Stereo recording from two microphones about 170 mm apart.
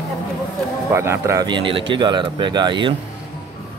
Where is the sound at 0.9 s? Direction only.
15° right (ahead or behind).